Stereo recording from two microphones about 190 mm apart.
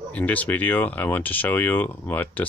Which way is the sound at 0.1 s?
10° left (ahead or behind).